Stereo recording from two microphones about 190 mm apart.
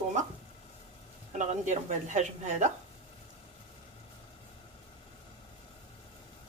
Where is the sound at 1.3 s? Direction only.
40° right (ahead or behind).